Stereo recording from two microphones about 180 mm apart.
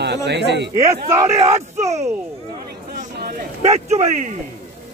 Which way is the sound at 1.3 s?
35° right (ahead or behind).